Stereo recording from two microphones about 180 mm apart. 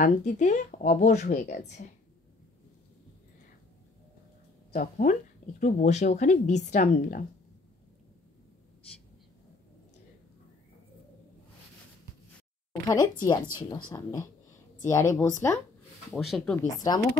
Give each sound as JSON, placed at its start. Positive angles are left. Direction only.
{"t": 0.0, "sound": "speech", "side_deg": 40}
{"t": 4.7, "sound": "a woman's voice", "side_deg": 45}
{"t": 12.8, "sound": "a woman's voice", "side_deg": 20}
{"t": 16.1, "sound": "speech", "side_deg": 0}
{"t": 16.7, "sound": "speech", "side_deg": 20}